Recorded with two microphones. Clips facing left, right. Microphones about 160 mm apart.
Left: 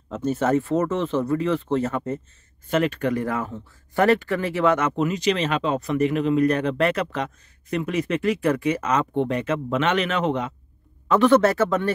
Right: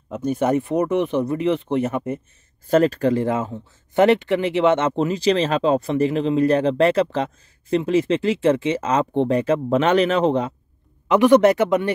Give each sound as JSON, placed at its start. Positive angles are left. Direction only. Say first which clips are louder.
{"t": 0.1, "sound": "speech", "louder": "right 1 dB", "side_deg": -15}
{"t": 2.7, "sound": "speech", "louder": "right 5 dB", "side_deg": -35}
{"t": 11.1, "sound": "speech", "louder": "right 3 dB", "side_deg": -15}